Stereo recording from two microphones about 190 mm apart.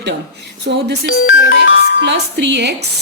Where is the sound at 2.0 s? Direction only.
65° right (ahead or behind).